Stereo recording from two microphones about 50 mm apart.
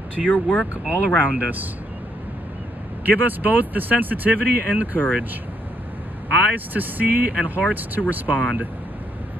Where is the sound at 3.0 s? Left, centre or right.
Right.